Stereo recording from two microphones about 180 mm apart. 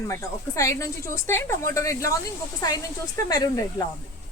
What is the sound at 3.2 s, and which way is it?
Speech, 20° left (ahead or behind).